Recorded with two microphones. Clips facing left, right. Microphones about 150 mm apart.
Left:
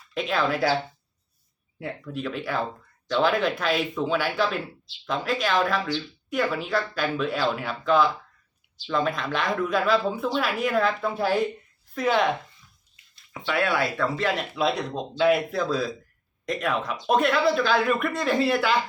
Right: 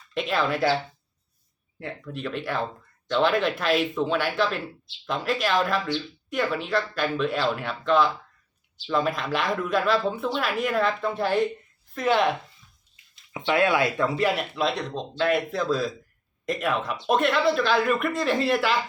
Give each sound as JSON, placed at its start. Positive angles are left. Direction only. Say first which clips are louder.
{"t": 0.1, "sound": "speech", "louder": "even", "side_deg": 0}
{"t": 1.8, "sound": "speech", "louder": "left 2 dB", "side_deg": 0}
{"t": 13.3, "sound": "speech", "louder": "right 3 dB", "side_deg": -20}
{"t": 14.5, "sound": "speech", "louder": "left 1 dB", "side_deg": 0}